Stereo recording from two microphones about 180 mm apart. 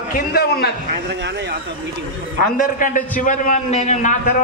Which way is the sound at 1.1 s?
70° right (ahead or behind).